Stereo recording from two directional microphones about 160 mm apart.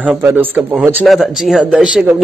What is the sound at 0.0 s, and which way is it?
Speech, 10° right (ahead or behind).